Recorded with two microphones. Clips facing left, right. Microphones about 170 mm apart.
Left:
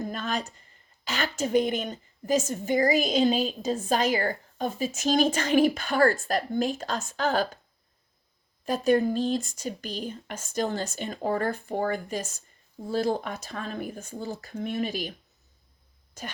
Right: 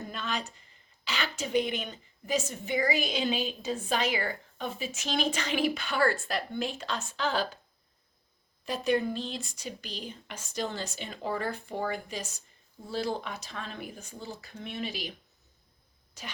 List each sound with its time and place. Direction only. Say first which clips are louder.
0.1 s a woman's voice: left 4 dB; 45° left (ahead or behind)
8.6 s a woman's voice: left 5 dB; 45° left (ahead or behind)
16.2 s a woman's voice: left 5 dB; 50° left (ahead or behind)